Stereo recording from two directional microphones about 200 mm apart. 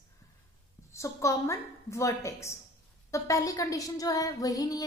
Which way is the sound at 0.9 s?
15° left (ahead or behind).